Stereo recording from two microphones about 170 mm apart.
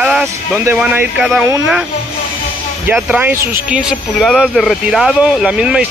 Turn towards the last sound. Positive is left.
turn(degrees=-5)  # may be behind; listen again after turning